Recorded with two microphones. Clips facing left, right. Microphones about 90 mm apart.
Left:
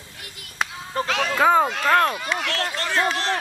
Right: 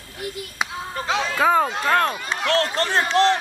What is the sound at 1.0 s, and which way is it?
Music, 25° right (ahead or behind).